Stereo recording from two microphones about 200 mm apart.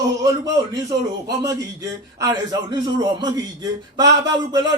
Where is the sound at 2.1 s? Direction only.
15° right (ahead or behind).